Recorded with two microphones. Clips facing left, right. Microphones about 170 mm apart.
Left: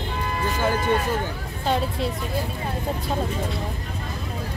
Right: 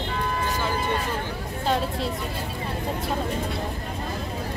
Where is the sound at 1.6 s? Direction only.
Centre (ahead or behind).